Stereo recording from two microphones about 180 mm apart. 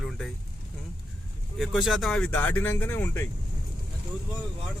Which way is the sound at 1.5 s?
Centre (ahead or behind).